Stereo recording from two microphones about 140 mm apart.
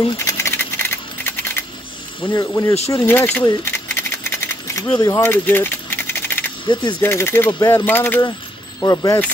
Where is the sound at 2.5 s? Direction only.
20° left (ahead or behind).